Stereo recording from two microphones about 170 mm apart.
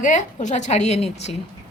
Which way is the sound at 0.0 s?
45° left (ahead or behind).